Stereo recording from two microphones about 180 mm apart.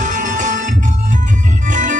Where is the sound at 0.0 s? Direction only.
45° right (ahead or behind).